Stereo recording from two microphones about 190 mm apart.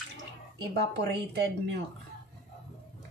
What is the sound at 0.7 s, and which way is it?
Speech, 60° right (ahead or behind).